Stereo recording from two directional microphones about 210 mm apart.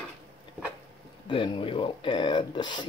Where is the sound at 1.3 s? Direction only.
25° left (ahead or behind).